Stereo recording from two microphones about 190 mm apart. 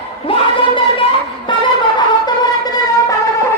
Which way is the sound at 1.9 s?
20° left (ahead or behind).